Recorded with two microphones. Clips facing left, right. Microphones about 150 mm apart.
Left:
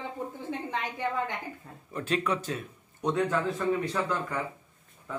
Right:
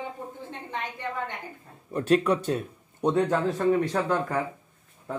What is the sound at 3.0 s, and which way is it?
Speech, 30° right (ahead or behind).